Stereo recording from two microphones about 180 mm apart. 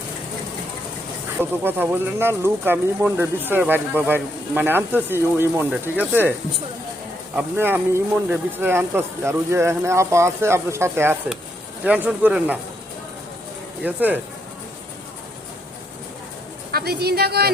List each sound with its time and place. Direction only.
1.4 s speech: 10° right (ahead or behind)
7.3 s speech: 10° right (ahead or behind)
13.8 s speech: 10° right (ahead or behind)
16.7 s speech: 60° right (ahead or behind)